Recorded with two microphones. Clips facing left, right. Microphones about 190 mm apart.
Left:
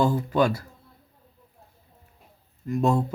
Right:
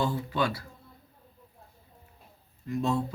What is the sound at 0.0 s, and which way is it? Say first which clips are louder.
Speech: left 7 dB; 45° left (ahead or behind).